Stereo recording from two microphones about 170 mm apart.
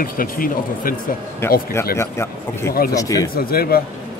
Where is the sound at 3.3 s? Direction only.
60° left (ahead or behind).